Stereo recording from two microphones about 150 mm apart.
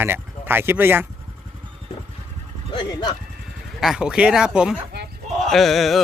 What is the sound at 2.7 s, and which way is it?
Speech, 30° left (ahead or behind).